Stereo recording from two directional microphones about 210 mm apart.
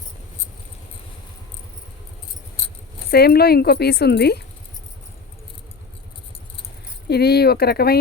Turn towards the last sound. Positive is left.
turn(degrees=45)  # may be behind; listen again after turning